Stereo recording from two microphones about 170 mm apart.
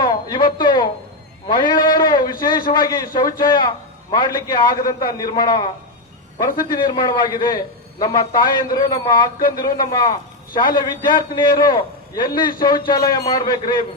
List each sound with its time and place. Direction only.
0.0 s a sound: 25° left (ahead or behind)
1.5 s a man's voice: 25° left (ahead or behind)
6.7 s a man's voice: 25° left (ahead or behind)